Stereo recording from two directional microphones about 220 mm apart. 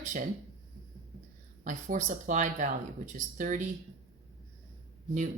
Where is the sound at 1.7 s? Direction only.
35° right (ahead or behind).